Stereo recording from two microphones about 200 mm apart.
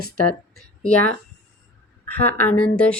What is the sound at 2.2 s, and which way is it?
Speech, 10° left (ahead or behind).